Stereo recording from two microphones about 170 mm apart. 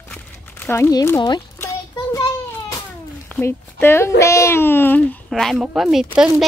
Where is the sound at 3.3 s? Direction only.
15° left (ahead or behind).